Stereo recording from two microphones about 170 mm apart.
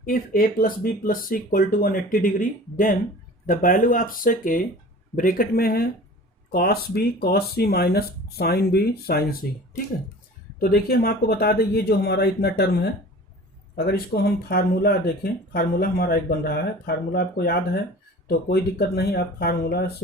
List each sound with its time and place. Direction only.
0.0 s speech: 60° left (ahead or behind)
10.6 s speech: 65° left (ahead or behind)